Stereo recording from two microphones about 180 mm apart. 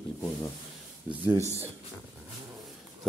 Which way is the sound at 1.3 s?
15° left (ahead or behind).